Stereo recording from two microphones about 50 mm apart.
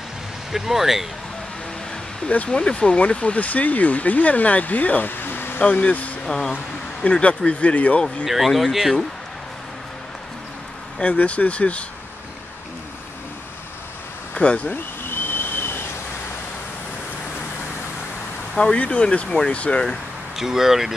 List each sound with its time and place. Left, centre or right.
0.5 s speech: centre
2.2 s speech: left
5.6 s speech: left
6.2 s speech: centre
6.5 s speech: left
8.3 s speech: centre
11.0 s speech: left
14.3 s a sound: left
14.7 s a sound: left
18.5 s speech: left
20.3 s speech: centre